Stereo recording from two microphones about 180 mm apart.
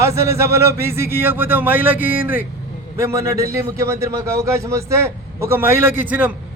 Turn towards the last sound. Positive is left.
turn(degrees=-10)  # may be behind; listen again after turning